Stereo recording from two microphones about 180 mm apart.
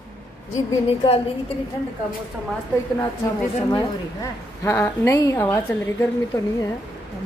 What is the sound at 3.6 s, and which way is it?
A woman's voice, 20° left (ahead or behind).